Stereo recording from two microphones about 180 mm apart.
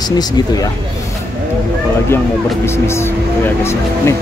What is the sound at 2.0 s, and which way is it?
Speech, 15° left (ahead or behind).